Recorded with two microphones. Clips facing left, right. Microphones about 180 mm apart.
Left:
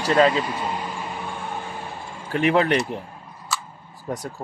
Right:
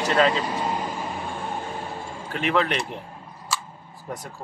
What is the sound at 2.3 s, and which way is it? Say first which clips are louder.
Speech: left 5 dB; 35° left (ahead or behind).